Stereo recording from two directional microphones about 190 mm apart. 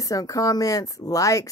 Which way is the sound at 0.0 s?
20° left (ahead or behind).